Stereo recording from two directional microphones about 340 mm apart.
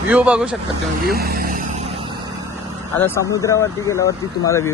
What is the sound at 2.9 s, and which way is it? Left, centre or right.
Speech, centre.